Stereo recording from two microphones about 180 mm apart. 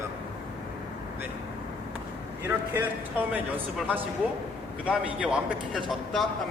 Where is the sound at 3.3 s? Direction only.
10° right (ahead or behind).